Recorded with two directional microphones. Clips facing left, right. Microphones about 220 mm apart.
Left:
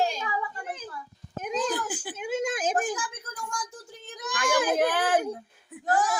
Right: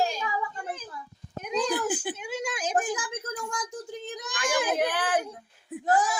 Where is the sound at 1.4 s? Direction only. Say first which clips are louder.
Right 1 dB; 45° left (ahead or behind).